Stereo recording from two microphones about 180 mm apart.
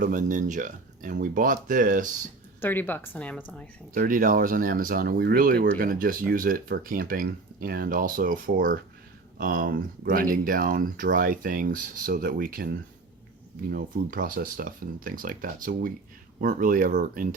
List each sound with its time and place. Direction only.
0.0 s speech: 45° right (ahead or behind)
2.6 s a woman's voice: 10° left (ahead or behind)
3.9 s speech: 50° right (ahead or behind)